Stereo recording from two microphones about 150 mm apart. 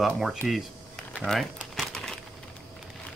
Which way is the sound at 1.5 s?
Centre (ahead or behind).